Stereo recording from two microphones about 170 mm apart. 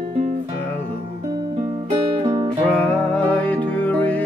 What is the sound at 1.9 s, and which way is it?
Music, 25° right (ahead or behind).